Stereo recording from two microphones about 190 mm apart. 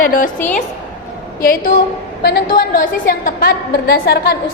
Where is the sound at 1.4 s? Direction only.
50° left (ahead or behind).